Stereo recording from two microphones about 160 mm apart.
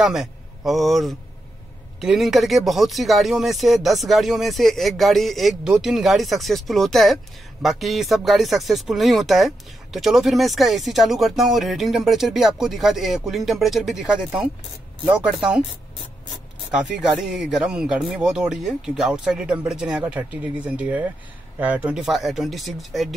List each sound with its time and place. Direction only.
0.0 s a man's voice: centre (ahead or behind)